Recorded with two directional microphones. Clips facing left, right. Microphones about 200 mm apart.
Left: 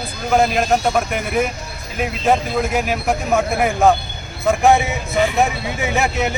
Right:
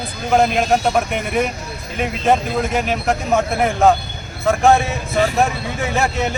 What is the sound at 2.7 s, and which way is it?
Speech, 5° left (ahead or behind).